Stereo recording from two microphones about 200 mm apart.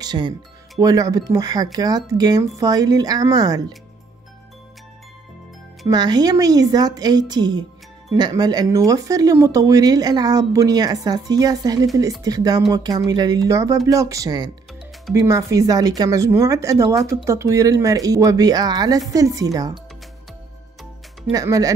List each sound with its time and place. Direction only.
0.0 s a woman's voice: 20° right (ahead or behind)
5.9 s a woman's voice: 20° right (ahead or behind)
21.3 s speech: 15° right (ahead or behind)